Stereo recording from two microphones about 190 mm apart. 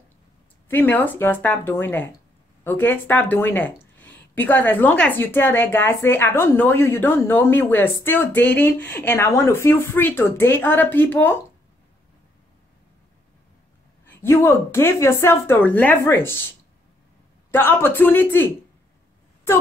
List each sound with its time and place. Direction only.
0.7 s speech: 10° left (ahead or behind)
14.0 s speech: 15° left (ahead or behind)